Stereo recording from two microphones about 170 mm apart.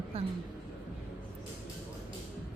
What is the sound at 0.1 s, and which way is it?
Speech, 35° right (ahead or behind).